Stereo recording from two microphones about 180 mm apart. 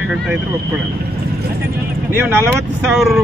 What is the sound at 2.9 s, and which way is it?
Speech, centre (ahead or behind).